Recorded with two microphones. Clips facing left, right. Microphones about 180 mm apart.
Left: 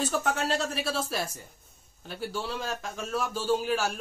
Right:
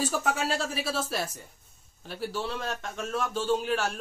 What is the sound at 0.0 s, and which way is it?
A man's voice, centre (ahead or behind).